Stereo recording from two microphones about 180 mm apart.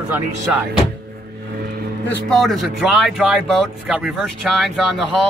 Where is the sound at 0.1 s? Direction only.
10° right (ahead or behind).